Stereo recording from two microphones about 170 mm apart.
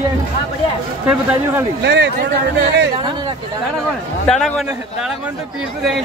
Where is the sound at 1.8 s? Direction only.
90° right.